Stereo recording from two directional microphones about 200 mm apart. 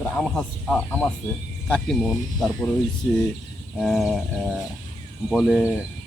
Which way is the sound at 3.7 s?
Centre (ahead or behind).